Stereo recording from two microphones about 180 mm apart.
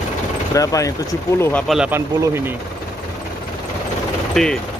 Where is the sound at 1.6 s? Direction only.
5° right (ahead or behind).